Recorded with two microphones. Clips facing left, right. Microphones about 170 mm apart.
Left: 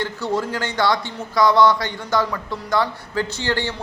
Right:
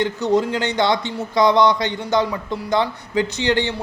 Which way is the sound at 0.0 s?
20° right (ahead or behind).